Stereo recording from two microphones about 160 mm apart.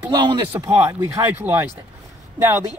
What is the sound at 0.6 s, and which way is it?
Speech, 15° right (ahead or behind).